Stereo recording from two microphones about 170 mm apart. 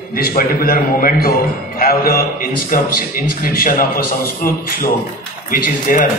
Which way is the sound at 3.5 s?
55° left (ahead or behind).